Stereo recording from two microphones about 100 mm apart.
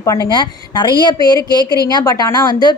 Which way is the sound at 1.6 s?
40° right (ahead or behind).